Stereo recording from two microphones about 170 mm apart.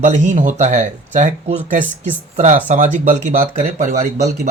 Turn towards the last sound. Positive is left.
turn(degrees=-40)  # may be behind; listen again after turning